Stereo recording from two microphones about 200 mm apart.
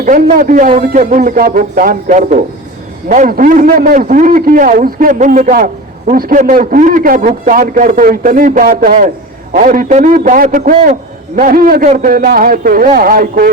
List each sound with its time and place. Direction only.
0.0 s a man's voice: 45° right (ahead or behind)